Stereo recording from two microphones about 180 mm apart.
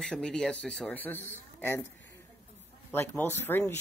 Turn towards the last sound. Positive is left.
turn(degrees=15)  # may be behind; listen again after turning